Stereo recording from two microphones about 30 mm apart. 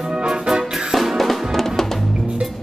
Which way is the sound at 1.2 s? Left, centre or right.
Centre.